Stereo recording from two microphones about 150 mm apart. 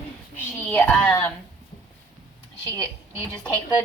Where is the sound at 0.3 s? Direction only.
10° left (ahead or behind).